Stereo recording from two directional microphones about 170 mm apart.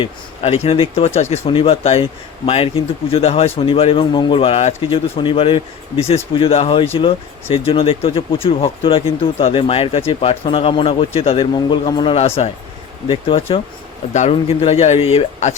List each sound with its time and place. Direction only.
0.0 s speech: 35° left (ahead or behind)
14.1 s speech: 40° left (ahead or behind)